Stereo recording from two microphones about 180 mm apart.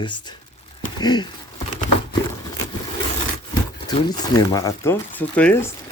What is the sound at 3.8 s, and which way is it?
Speech, 25° left (ahead or behind).